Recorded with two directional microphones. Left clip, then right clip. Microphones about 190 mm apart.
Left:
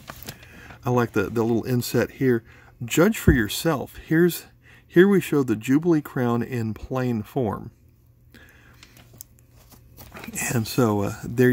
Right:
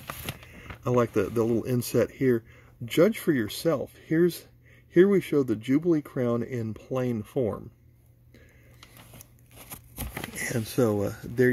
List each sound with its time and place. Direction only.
0.6 s speech: 20° left (ahead or behind)
10.4 s speech: 30° left (ahead or behind)